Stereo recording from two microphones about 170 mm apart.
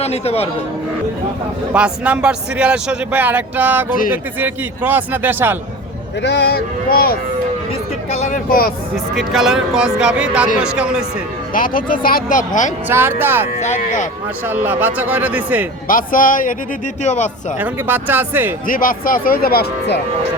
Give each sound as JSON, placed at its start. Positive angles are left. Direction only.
{"t": 0.0, "sound": "speech", "side_deg": 40}
{"t": 1.7, "sound": "speech", "side_deg": -5}
{"t": 6.2, "sound": "speech", "side_deg": 85}
{"t": 8.1, "sound": "speech", "side_deg": 45}
{"t": 9.1, "sound": "speech", "side_deg": 0}
{"t": 11.5, "sound": "speech", "side_deg": 55}
{"t": 12.9, "sound": "speech", "side_deg": -15}
{"t": 13.6, "sound": "speech", "side_deg": 45}
{"t": 14.4, "sound": "speech", "side_deg": -10}
{"t": 15.9, "sound": "speech", "side_deg": 55}
{"t": 17.6, "sound": "speech", "side_deg": -10}
{"t": 18.7, "sound": "speech", "side_deg": 55}